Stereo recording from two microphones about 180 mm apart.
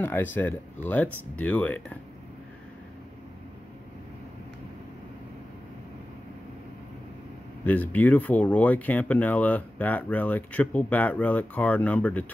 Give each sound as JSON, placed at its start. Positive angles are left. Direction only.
{"t": 0.0, "sound": "speech", "side_deg": 10}
{"t": 7.6, "sound": "speech", "side_deg": 10}